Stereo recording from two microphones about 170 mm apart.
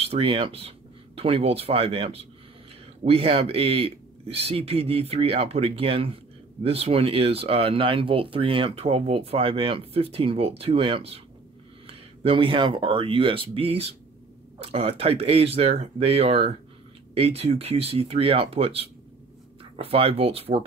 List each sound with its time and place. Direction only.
0.0 s speech: 35° right (ahead or behind)